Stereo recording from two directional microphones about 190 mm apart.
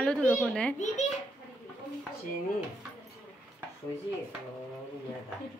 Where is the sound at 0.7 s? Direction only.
40° left (ahead or behind).